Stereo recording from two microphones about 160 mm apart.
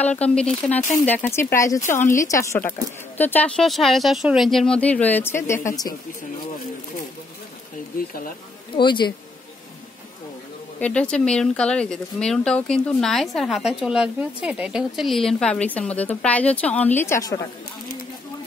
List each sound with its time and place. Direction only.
0.1 s speech: 5° left (ahead or behind)
7.9 s a sound: 60° left (ahead or behind)
8.7 s speech: 30° left (ahead or behind)
10.8 s speech: 5° left (ahead or behind)